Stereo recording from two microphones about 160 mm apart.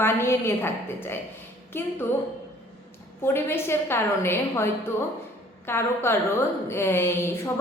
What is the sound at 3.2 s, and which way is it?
A woman's voice, 15° left (ahead or behind).